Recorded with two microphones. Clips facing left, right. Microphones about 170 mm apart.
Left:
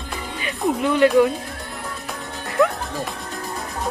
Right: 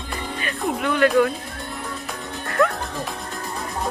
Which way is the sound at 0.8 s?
20° left (ahead or behind).